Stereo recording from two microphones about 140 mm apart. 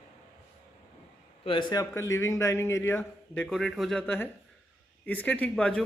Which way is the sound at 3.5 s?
Centre (ahead or behind).